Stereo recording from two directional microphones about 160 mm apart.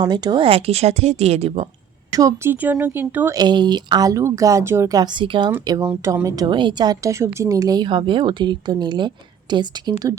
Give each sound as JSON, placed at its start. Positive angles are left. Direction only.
{"t": 0.1, "sound": "speech", "side_deg": -30}
{"t": 2.1, "sound": "speech", "side_deg": -20}
{"t": 3.3, "sound": "a woman's voice", "side_deg": -25}